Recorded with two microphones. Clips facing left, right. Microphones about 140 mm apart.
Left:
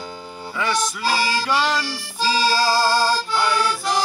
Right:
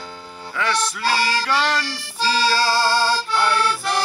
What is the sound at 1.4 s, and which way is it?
Music, 5° left (ahead or behind).